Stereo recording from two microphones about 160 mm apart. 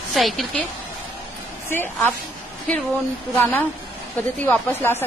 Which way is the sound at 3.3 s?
10° left (ahead or behind).